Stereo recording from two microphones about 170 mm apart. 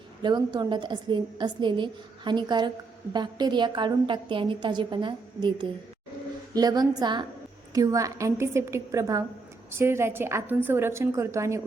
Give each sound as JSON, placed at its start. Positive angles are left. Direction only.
{"t": 0.2, "sound": "a woman's voice", "side_deg": -25}